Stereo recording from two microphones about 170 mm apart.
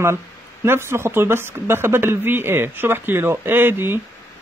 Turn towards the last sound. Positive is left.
turn(degrees=-15)  # may be behind; listen again after turning